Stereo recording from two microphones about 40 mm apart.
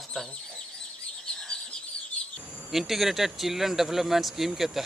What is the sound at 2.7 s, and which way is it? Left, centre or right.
Speech, centre.